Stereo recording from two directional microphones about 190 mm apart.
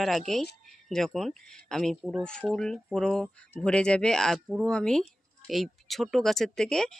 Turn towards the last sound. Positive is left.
turn(degrees=5)  # may be behind; listen again after turning